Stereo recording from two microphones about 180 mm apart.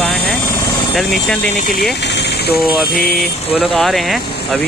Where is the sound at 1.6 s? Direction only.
50° left (ahead or behind).